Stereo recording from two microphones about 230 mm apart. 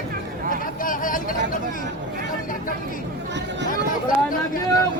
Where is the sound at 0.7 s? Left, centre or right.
Left.